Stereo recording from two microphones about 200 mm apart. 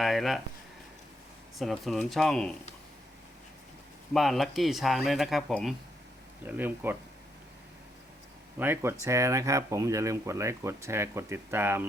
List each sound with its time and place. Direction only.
0.0 s speech: centre (ahead or behind)
1.5 s speech: centre (ahead or behind)
4.1 s speech: centre (ahead or behind)
8.5 s speech: 10° right (ahead or behind)